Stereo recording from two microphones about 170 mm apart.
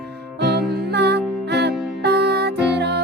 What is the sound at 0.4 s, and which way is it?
Music, 80° right.